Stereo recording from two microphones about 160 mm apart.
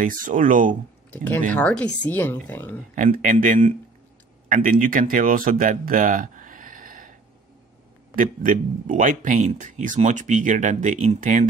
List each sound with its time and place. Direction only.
0.0 s speech: 55° right (ahead or behind)
1.1 s speech: 10° left (ahead or behind)
3.0 s speech: 60° right (ahead or behind)
8.2 s speech: 55° right (ahead or behind)